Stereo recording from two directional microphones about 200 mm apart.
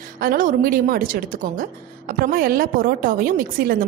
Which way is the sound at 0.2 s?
45° right (ahead or behind).